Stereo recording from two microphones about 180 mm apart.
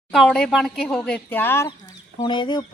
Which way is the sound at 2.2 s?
25° left (ahead or behind).